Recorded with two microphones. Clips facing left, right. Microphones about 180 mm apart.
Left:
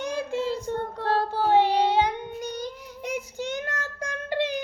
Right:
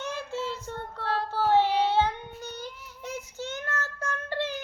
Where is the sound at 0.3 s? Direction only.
15° left (ahead or behind).